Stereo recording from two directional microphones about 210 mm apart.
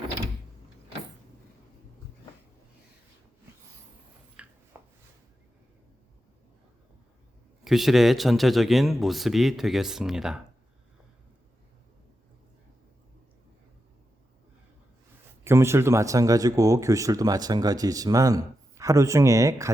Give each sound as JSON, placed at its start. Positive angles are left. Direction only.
{"t": 4.4, "sound": "rub", "side_deg": -5}
{"t": 4.7, "sound": "a sound", "side_deg": -10}
{"t": 7.6, "sound": "speech", "side_deg": 0}
{"t": 15.4, "sound": "speech", "side_deg": -10}